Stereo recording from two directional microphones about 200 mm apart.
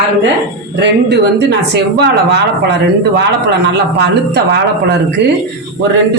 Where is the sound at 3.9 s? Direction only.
60° right (ahead or behind).